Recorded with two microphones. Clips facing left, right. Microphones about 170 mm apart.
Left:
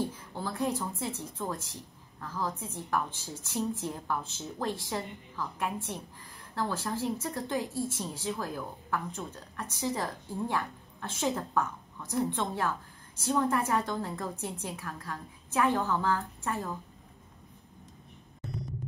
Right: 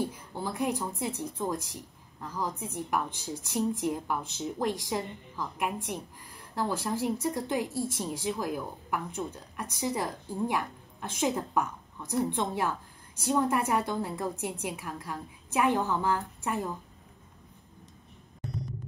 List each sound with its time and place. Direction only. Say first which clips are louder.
0.4 s a woman's voice: right 1 dB; 15° right (ahead or behind)